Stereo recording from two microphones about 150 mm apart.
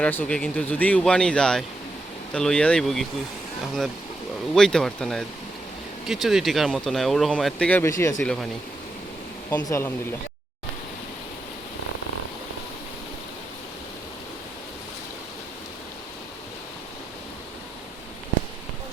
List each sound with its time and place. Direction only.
0.0 s speech: 10° left (ahead or behind)
4.5 s speech: 5° left (ahead or behind)
8.2 s speech: 5° left (ahead or behind)
9.6 s speech: 20° left (ahead or behind)